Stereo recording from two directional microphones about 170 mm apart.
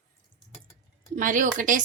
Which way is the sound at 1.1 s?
50° right (ahead or behind).